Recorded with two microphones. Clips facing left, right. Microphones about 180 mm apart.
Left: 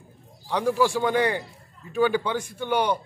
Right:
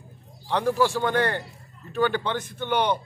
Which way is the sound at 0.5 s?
10° left (ahead or behind).